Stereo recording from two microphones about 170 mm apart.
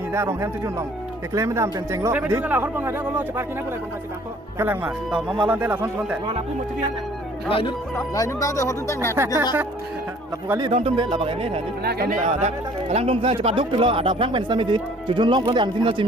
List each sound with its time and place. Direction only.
0.1 s speech: 15° right (ahead or behind)
4.6 s speech: 10° right (ahead or behind)
7.4 s speech: 30° left (ahead or behind)
8.1 s speech: 20° left (ahead or behind)
9.1 s speech: 15° right (ahead or behind)
10.6 s speech: 35° right (ahead or behind)
11.8 s speech: 65° right (ahead or behind)
12.2 s speech: 40° right (ahead or behind)